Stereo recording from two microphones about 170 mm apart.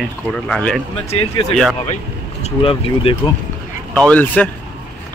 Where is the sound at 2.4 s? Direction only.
35° left (ahead or behind).